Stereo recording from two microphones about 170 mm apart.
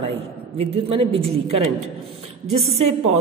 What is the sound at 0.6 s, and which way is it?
Speech, 35° right (ahead or behind).